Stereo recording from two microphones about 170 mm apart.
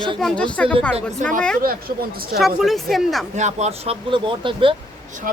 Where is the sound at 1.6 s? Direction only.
60° right (ahead or behind).